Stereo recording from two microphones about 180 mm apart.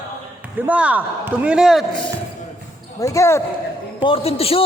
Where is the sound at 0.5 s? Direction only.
10° right (ahead or behind).